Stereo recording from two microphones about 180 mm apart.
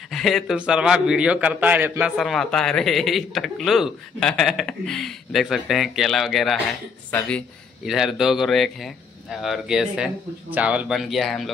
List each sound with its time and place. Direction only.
0.1 s a man's voice: centre (ahead or behind)